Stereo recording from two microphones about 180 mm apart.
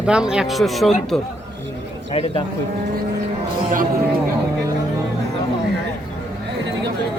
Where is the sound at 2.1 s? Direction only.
30° left (ahead or behind).